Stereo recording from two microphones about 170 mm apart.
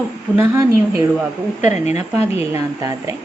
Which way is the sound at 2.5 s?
20° right (ahead or behind).